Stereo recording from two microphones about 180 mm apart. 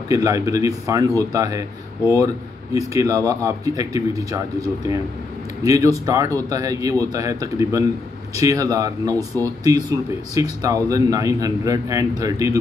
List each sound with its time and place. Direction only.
0.1 s speech: 20° right (ahead or behind)
2.7 s a man's voice: 20° right (ahead or behind)